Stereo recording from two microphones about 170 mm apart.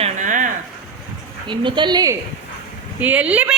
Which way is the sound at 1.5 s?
30° right (ahead or behind).